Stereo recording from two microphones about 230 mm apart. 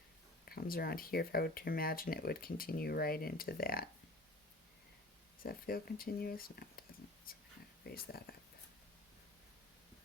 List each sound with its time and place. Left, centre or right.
0.4 s speech: left
5.4 s speech: left
7.9 s speech: left